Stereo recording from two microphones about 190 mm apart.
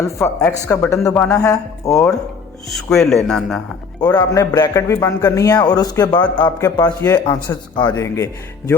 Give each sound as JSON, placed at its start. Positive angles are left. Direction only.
{"t": 0.0, "sound": "speech", "side_deg": 15}
{"t": 2.6, "sound": "speech", "side_deg": 0}
{"t": 4.0, "sound": "a man's voice", "side_deg": 20}